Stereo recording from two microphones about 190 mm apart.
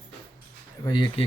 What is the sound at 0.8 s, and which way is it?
Speech, 25° left (ahead or behind).